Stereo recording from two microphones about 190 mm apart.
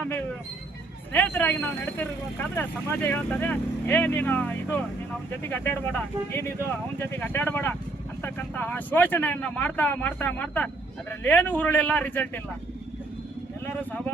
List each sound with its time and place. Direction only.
1.1 s speech: 10° left (ahead or behind)
13.7 s speech: 5° left (ahead or behind)